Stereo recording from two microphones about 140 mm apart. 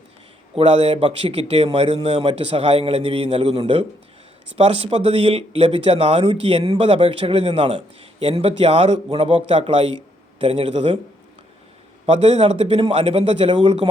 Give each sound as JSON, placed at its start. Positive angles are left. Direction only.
{"t": 0.5, "sound": "a man's voice", "side_deg": -45}
{"t": 12.0, "sound": "a man's voice", "side_deg": -50}